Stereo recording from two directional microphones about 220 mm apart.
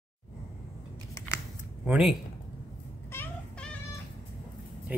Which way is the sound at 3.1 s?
5° left (ahead or behind).